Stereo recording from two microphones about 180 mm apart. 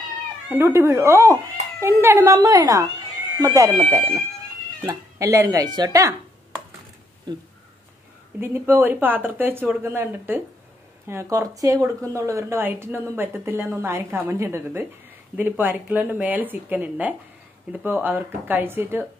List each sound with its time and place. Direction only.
0.5 s a woman's voice: 10° right (ahead or behind)
8.4 s a woman's voice: 10° right (ahead or behind)